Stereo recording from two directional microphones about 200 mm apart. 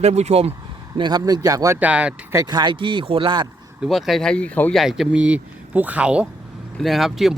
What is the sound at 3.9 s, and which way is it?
Speech, centre (ahead or behind).